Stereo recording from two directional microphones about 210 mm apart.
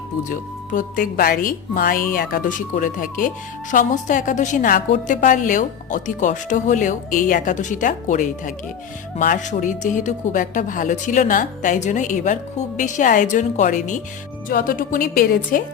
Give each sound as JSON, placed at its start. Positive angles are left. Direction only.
{"t": 0.3, "sound": "speech", "side_deg": 40}